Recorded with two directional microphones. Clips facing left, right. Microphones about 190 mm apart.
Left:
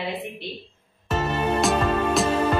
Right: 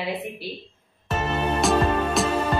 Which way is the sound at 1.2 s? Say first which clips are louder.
Left 1 dB; 5° right (ahead or behind).